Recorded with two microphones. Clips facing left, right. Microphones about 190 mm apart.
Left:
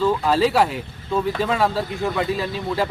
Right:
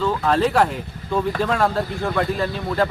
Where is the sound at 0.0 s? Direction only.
5° left (ahead or behind).